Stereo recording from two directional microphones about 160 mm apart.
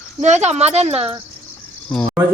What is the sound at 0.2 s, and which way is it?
Speech, 45° right (ahead or behind).